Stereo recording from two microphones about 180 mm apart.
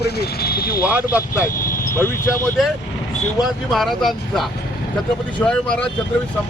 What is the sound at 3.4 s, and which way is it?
Speech, centre (ahead or behind).